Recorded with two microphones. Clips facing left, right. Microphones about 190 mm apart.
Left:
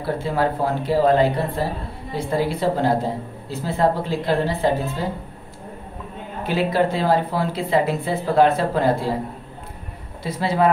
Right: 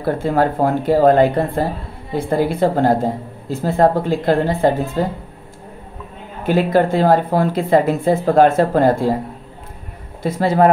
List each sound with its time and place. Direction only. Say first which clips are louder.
0.0 s speech: right 5 dB; 50° right (ahead or behind)
6.4 s speech: right 5 dB; 50° right (ahead or behind)
10.2 s speech: right 5 dB; 45° right (ahead or behind)